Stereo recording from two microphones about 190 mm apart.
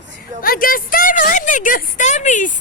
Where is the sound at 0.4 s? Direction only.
50° left (ahead or behind).